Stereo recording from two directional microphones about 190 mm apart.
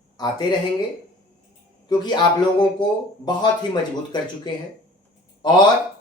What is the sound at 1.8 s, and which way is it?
A man's voice, 25° left (ahead or behind).